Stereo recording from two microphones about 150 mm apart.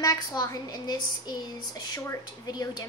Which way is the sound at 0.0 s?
25° left (ahead or behind).